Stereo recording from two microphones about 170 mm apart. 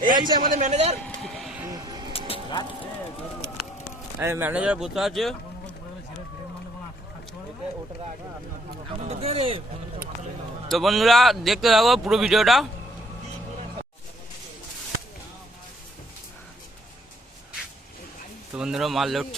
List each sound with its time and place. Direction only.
0.0 s a man's voice: 25° right (ahead or behind)
0.4 s a man's voice: 50° right (ahead or behind)
1.0 s vehicle: 5° left (ahead or behind)
1.7 s vehicle: 20° right (ahead or behind)
2.1 s music: 35° left (ahead or behind)
4.2 s speech: 15° right (ahead or behind)
9.0 s speech: 35° right (ahead or behind)
10.7 s speech: centre (ahead or behind)
18.5 s speech: 5° right (ahead or behind)